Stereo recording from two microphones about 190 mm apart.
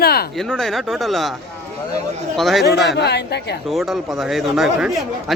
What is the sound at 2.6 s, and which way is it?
Speech, 60° left (ahead or behind).